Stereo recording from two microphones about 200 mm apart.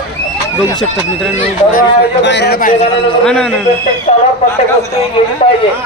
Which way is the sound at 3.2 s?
5° left (ahead or behind).